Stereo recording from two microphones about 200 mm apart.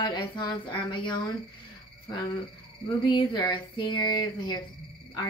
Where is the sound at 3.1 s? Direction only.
25° left (ahead or behind).